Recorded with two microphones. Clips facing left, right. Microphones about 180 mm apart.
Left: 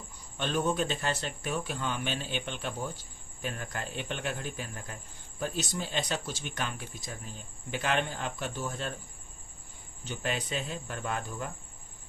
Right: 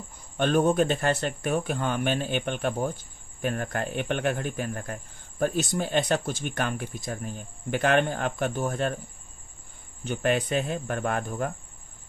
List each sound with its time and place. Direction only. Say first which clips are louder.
0.4 s speech: right 8 dB; 55° right (ahead or behind)
10.0 s speech: right 9 dB; 55° right (ahead or behind)